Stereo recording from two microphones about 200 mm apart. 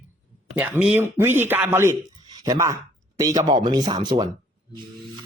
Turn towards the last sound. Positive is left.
turn(degrees=-20)  # may be behind; listen again after turning